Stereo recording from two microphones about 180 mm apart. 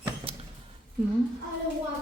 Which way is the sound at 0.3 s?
30° right (ahead or behind).